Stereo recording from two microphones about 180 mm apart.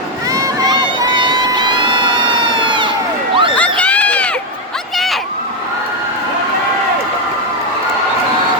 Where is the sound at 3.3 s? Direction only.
30° right (ahead or behind).